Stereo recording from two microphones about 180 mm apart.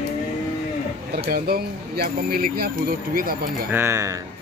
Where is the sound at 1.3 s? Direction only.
55° right (ahead or behind).